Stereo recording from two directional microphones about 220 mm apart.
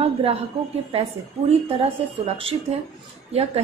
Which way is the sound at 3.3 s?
30° right (ahead or behind).